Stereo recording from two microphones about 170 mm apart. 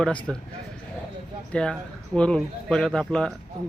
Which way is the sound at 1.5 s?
5° left (ahead or behind).